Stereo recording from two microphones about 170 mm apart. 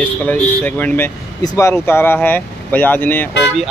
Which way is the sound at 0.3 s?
10° left (ahead or behind).